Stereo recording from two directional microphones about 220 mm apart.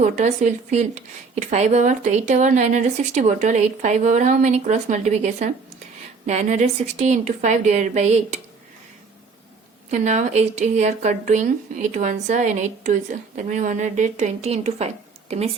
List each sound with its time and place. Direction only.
0.0 s speech: 30° right (ahead or behind)
9.9 s speech: 30° right (ahead or behind)